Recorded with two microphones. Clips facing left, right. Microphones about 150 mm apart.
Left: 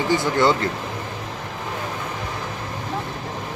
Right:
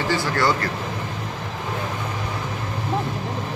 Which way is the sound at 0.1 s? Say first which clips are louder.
Left 4 dB; 20° left (ahead or behind).